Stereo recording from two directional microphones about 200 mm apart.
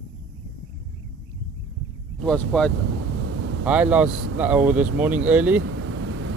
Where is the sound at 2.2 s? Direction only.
5° left (ahead or behind).